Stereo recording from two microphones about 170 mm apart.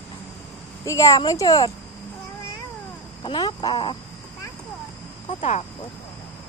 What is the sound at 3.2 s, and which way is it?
Speech, 25° left (ahead or behind).